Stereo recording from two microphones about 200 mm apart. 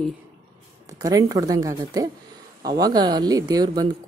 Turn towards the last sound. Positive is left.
turn(degrees=-20)  # may be behind; listen again after turning